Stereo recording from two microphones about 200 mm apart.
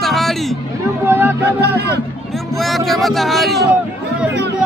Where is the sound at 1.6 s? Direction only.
55° right (ahead or behind).